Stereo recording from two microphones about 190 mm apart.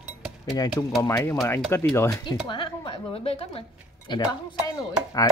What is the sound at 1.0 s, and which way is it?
Speech, 15° left (ahead or behind).